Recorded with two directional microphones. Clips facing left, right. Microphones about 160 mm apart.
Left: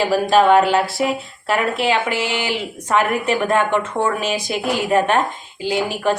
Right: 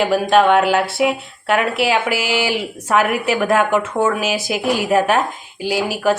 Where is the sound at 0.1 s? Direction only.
Centre (ahead or behind).